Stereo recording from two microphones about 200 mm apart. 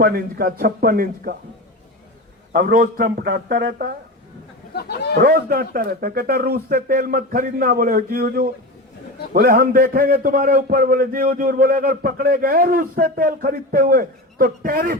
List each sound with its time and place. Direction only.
0.0 s a man's voice: 50° right (ahead or behind)
2.5 s a man's voice: 45° right (ahead or behind)
4.7 s a sound: 55° left (ahead or behind)
5.2 s a man's voice: 45° right (ahead or behind)